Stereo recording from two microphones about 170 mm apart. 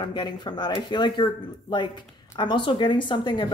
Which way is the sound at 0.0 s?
25° left (ahead or behind).